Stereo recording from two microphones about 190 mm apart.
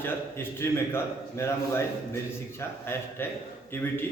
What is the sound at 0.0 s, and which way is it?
A man's voice, 10° left (ahead or behind).